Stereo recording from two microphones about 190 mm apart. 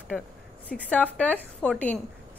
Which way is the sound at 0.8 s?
10° left (ahead or behind).